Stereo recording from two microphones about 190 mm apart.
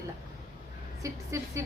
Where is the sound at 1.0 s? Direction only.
15° right (ahead or behind).